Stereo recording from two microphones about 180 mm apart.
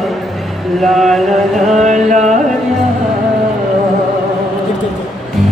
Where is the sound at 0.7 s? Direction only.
Centre (ahead or behind).